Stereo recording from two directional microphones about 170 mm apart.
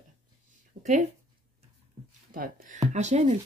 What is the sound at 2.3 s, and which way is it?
Speech, 50° right (ahead or behind).